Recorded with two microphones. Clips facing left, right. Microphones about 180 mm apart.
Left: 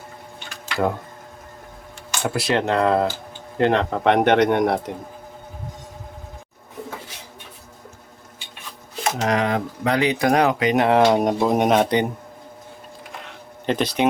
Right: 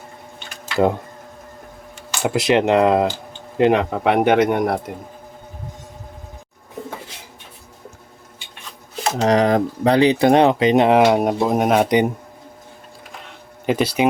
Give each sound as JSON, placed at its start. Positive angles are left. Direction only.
{"t": 2.2, "sound": "speech", "side_deg": -20}
{"t": 9.2, "sound": "speech", "side_deg": -35}
{"t": 13.7, "sound": "speech", "side_deg": -5}